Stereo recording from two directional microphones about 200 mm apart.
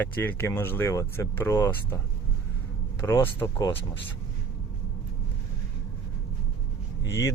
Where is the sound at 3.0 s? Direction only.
15° left (ahead or behind).